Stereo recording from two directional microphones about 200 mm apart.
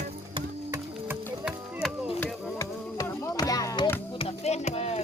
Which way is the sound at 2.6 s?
15° left (ahead or behind).